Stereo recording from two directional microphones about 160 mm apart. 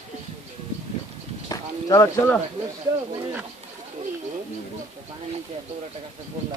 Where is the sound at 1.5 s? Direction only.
20° left (ahead or behind).